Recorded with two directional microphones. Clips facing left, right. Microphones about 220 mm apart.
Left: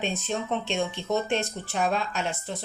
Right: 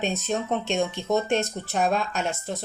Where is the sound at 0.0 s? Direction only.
45° right (ahead or behind).